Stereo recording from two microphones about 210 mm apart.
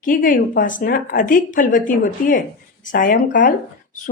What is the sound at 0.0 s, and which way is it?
Speech, 40° left (ahead or behind).